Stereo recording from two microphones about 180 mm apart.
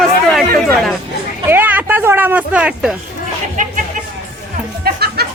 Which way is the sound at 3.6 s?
45° right (ahead or behind).